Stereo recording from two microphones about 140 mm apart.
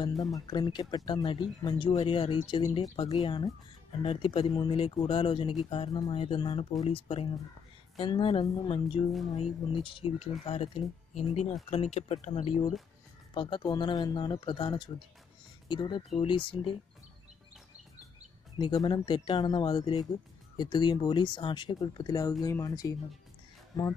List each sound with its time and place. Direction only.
0.0 s speech: 25° left (ahead or behind)
2.0 s speech: 40° left (ahead or behind)
4.0 s speech: 40° left (ahead or behind)
18.6 s speech: 35° left (ahead or behind)